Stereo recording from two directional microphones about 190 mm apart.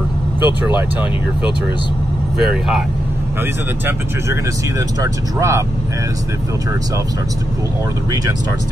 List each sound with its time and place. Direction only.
0.4 s speech: 25° left (ahead or behind)
3.8 s speech: 15° right (ahead or behind)